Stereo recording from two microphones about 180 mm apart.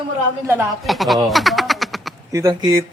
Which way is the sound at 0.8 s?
Centre (ahead or behind).